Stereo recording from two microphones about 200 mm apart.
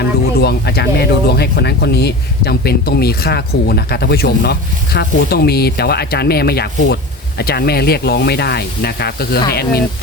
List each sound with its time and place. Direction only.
0.3 s speech: 55° left (ahead or behind)